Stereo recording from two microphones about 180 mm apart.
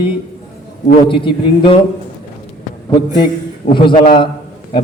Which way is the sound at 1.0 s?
30° left (ahead or behind).